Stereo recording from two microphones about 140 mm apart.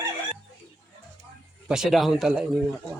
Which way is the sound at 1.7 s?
Centre (ahead or behind).